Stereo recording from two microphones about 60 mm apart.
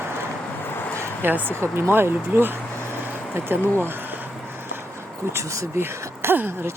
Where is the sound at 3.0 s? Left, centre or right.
Right.